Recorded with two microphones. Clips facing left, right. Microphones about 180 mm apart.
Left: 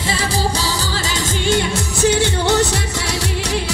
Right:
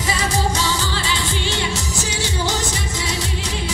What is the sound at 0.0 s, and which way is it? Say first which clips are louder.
Music: left 1 dB; 30° left (ahead or behind).